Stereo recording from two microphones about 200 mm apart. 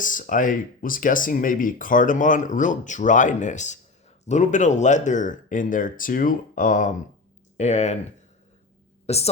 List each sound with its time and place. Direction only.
0.0 s speech: 40° left (ahead or behind)
9.0 s a woman's voice: 30° left (ahead or behind)